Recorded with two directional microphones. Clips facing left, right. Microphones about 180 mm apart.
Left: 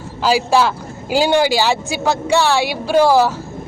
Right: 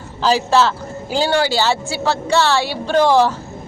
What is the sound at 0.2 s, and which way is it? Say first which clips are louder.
A woman's voice: even; 10° left (ahead or behind).